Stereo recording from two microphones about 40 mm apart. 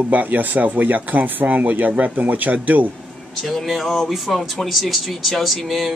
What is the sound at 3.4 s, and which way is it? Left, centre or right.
Speech, centre.